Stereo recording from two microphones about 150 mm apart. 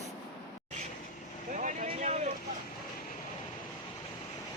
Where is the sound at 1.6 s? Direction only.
50° right (ahead or behind).